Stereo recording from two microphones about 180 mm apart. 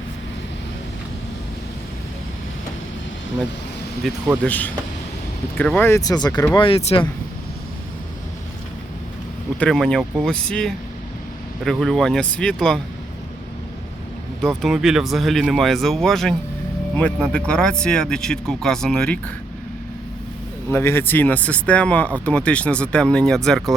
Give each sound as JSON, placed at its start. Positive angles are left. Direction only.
{"t": 4.0, "sound": "speech", "side_deg": 0}
{"t": 6.6, "sound": "speech", "side_deg": 30}
{"t": 9.6, "sound": "speech", "side_deg": 5}
{"t": 14.4, "sound": "speech", "side_deg": 0}
{"t": 20.7, "sound": "speech", "side_deg": 15}